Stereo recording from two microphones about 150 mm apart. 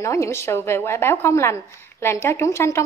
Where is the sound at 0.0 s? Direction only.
20° left (ahead or behind).